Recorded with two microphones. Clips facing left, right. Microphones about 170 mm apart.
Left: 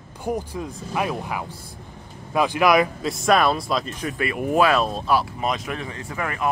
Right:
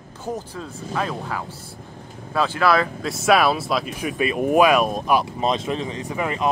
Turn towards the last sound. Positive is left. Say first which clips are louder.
# right 3 dB
turn(degrees=-20)  # may be behind; listen again after turning